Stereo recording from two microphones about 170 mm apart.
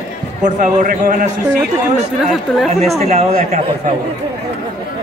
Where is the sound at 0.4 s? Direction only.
45° right (ahead or behind).